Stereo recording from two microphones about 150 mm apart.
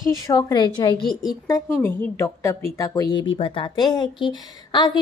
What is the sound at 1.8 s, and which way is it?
A woman's voice, 15° left (ahead or behind).